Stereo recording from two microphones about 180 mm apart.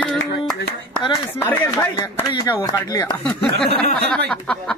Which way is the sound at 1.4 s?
10° left (ahead or behind).